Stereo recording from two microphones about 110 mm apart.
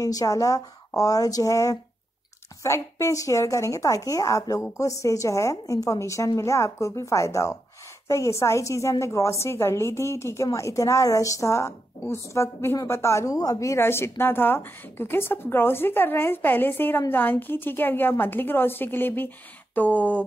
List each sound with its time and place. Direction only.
0.0 s a woman's voice: 30° left (ahead or behind); by 20.2 s 15° left (ahead or behind)